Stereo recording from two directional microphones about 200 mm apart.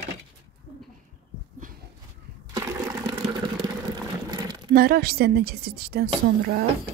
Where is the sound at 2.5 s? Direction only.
15° right (ahead or behind).